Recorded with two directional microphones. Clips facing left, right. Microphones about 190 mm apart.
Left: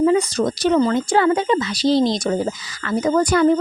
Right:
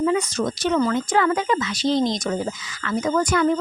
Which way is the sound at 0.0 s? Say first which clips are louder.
Left 5 dB; 35° left (ahead or behind).